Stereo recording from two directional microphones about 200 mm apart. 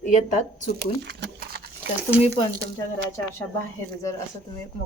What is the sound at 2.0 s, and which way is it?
Speech, 10° right (ahead or behind).